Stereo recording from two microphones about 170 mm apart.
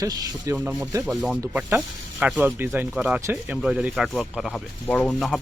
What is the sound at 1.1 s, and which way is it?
Speech, 5° right (ahead or behind).